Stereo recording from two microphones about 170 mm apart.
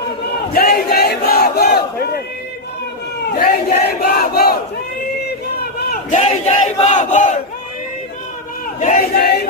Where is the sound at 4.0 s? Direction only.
60° left (ahead or behind).